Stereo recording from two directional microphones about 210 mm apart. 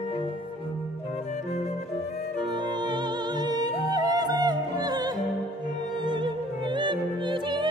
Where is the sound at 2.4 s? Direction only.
20° right (ahead or behind).